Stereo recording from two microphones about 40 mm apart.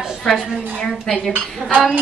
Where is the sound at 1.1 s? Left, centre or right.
Centre.